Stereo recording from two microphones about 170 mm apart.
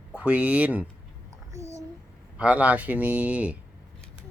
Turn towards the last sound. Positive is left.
turn(degrees=-10)  # may be behind; listen again after turning